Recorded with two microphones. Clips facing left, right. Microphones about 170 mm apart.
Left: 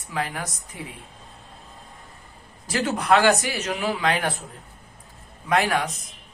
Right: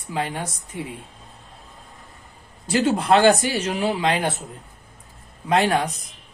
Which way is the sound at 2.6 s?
25° right (ahead or behind).